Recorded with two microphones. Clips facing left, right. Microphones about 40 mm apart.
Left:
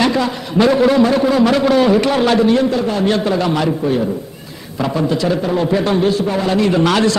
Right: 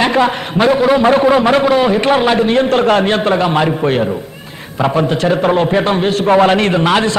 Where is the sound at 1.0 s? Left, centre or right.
Right.